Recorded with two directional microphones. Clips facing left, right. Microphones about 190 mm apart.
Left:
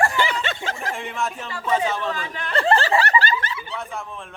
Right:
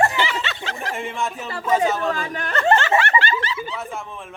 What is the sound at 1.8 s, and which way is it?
Speech, 45° right (ahead or behind).